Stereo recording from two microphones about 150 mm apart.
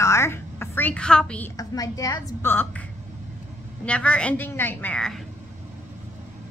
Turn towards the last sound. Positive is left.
turn(degrees=5)  # may be behind; listen again after turning